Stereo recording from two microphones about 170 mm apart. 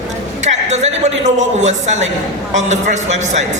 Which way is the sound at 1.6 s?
40° right (ahead or behind).